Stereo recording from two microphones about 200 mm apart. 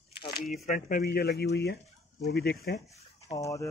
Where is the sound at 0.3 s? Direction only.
45° left (ahead or behind).